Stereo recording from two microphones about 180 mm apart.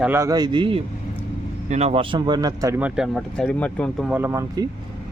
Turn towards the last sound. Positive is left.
turn(degrees=-15)  # may be behind; listen again after turning